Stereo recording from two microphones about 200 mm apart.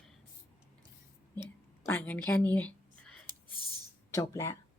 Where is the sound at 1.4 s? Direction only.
10° left (ahead or behind).